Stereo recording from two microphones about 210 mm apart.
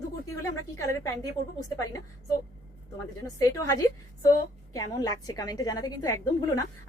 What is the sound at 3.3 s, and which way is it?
A woman's voice, 15° left (ahead or behind).